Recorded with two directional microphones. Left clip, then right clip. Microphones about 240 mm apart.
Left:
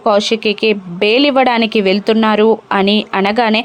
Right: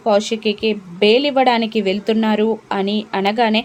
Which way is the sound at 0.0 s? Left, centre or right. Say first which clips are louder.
Left 4 dB; centre.